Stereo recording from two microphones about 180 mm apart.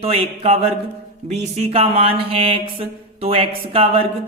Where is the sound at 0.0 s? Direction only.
35° right (ahead or behind).